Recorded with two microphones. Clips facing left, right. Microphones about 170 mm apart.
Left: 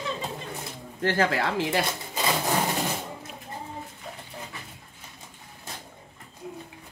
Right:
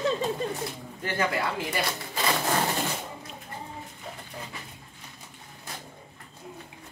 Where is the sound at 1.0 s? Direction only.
85° left.